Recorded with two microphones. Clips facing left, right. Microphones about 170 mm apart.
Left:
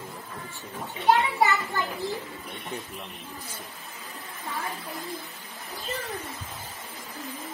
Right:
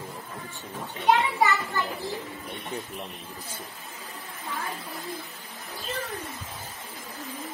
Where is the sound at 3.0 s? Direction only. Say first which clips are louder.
Right 1 dB; 30° right (ahead or behind).